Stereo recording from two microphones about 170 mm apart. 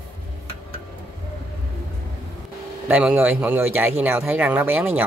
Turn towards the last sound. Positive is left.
turn(degrees=-10)  # may be behind; listen again after turning